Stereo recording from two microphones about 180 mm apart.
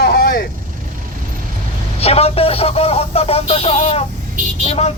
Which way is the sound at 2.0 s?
35° left (ahead or behind).